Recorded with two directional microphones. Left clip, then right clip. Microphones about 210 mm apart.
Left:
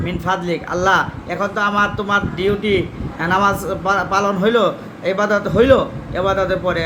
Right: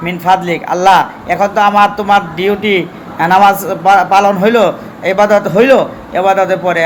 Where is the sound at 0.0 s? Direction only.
15° left (ahead or behind).